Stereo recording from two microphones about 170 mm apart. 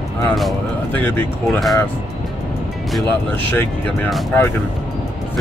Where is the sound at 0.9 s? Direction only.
10° left (ahead or behind).